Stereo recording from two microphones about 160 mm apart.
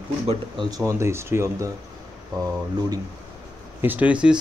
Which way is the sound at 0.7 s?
20° right (ahead or behind).